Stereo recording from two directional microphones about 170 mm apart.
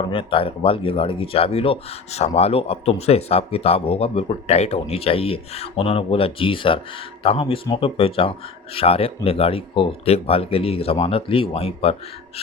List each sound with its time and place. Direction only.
0.1 s speech: 30° left (ahead or behind)